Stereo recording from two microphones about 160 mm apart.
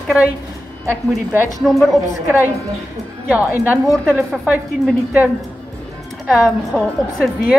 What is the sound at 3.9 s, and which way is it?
A woman's voice, centre (ahead or behind).